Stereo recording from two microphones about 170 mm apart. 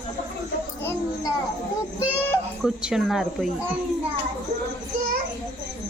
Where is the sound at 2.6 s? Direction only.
5° right (ahead or behind).